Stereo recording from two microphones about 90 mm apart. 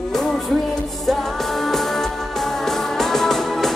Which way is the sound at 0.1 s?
5° left (ahead or behind).